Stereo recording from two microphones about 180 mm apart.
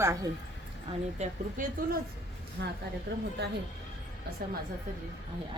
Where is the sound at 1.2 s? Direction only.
35° right (ahead or behind).